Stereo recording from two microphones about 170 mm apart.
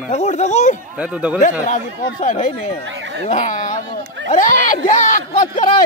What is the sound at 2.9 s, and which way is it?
Speech, 90° right.